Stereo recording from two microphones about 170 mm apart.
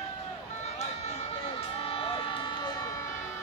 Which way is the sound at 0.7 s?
40° left (ahead or behind).